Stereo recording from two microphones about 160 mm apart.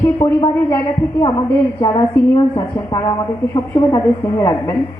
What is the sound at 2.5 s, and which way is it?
Speech, 25° left (ahead or behind).